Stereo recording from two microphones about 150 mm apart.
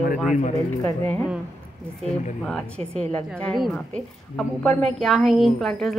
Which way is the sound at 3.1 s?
10° left (ahead or behind).